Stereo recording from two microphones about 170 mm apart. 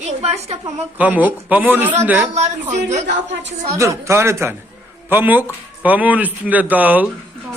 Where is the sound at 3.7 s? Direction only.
15° right (ahead or behind).